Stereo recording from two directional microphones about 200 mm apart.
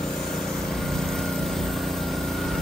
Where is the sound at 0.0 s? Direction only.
Centre (ahead or behind).